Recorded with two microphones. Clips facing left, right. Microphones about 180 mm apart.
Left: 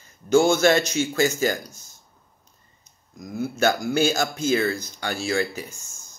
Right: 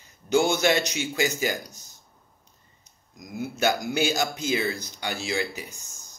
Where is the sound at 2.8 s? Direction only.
15° right (ahead or behind).